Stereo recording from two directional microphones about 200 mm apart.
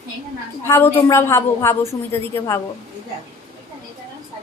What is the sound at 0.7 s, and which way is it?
Speech, 15° left (ahead or behind).